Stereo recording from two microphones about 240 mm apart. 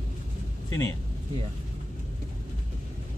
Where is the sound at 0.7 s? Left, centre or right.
Centre.